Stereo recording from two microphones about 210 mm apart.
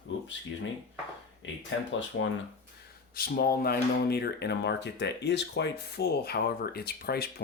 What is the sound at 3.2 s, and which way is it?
Speech, 45° left (ahead or behind).